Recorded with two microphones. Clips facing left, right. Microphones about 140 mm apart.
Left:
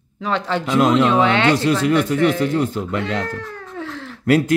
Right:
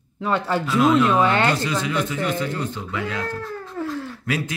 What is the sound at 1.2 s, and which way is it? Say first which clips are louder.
Speech: left 3 dB; 75° left (ahead or behind).